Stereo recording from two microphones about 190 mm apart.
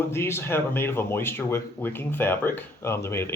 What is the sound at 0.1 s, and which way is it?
Speech, 15° left (ahead or behind).